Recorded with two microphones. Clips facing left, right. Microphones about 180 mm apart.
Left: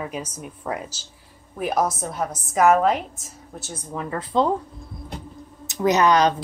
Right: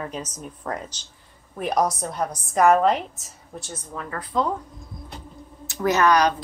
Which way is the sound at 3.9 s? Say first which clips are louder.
Left 4 dB; 25° left (ahead or behind).